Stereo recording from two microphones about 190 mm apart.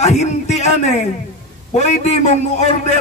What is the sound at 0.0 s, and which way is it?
A man's voice, 35° left (ahead or behind).